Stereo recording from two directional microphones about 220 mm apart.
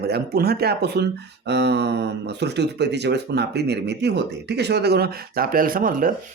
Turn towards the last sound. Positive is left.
turn(degrees=-40)  # may be behind; listen again after turning